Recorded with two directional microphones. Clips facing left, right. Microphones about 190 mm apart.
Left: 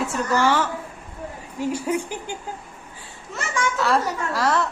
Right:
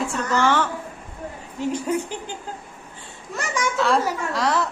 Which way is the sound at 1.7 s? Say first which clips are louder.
Right 1 dB; 10° left (ahead or behind).